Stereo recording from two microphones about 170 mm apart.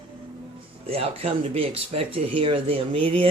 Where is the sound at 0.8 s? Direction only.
35° right (ahead or behind).